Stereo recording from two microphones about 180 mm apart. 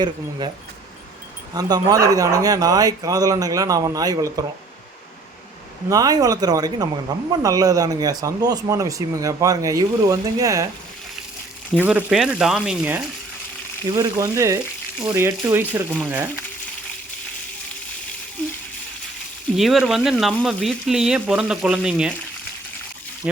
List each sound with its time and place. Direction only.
0.0 s speech: 25° right (ahead or behind)
1.5 s speech: 20° right (ahead or behind)
5.9 s speech: 20° right (ahead or behind)
11.9 s speech: 5° right (ahead or behind)
13.8 s speech: 20° right (ahead or behind)
19.5 s speech: centre (ahead or behind)
23.2 s speech: 5° right (ahead or behind)